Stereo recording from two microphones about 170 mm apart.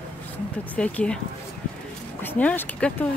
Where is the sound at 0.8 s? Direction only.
5° left (ahead or behind).